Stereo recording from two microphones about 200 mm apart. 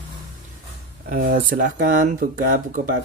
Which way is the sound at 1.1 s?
45° right (ahead or behind).